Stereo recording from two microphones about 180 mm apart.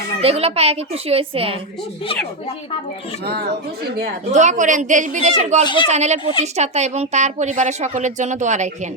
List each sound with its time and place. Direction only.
0.2 s a woman's voice: 35° right (ahead or behind)
4.3 s a man's voice: 40° right (ahead or behind)
5.6 s speech: 25° left (ahead or behind)
5.9 s a woman's voice: 40° right (ahead or behind)